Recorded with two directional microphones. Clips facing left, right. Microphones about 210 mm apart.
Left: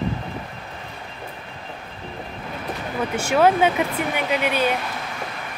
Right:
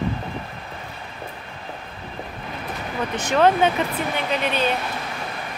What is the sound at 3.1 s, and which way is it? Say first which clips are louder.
A woman's voice: even; 10° left (ahead or behind).